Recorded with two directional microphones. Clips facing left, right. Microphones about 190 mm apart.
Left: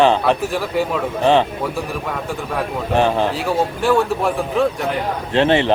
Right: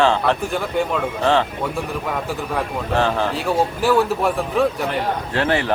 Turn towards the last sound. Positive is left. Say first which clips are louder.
# left 5 dB
turn(degrees=20)  # may be behind; listen again after turning